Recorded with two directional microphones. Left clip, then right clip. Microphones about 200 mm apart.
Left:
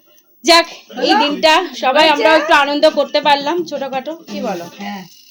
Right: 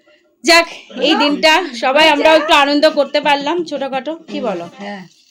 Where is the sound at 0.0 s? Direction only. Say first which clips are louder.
Even; 15° right (ahead or behind).